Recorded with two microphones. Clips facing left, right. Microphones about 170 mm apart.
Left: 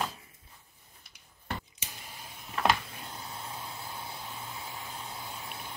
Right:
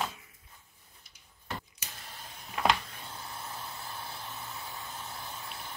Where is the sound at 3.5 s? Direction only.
10° left (ahead or behind).